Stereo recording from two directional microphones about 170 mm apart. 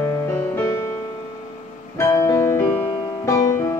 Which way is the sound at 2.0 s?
20° left (ahead or behind).